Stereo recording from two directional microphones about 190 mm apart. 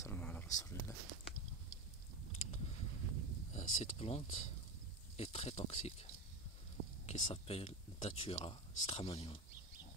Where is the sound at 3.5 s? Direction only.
35° left (ahead or behind).